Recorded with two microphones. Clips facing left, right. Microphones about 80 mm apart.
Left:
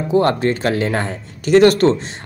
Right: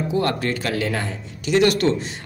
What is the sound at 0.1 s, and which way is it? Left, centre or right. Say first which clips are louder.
A man's voice: left 9 dB; left.